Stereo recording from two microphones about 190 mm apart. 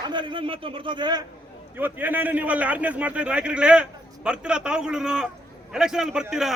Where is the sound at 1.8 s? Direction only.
10° right (ahead or behind).